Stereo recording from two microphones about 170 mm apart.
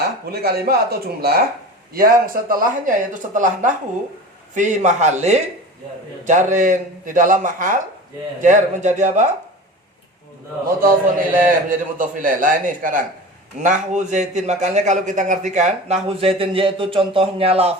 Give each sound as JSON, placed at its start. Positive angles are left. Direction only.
{"t": 0.0, "sound": "a man's voice", "side_deg": -65}
{"t": 11.3, "sound": "a man's voice", "side_deg": -50}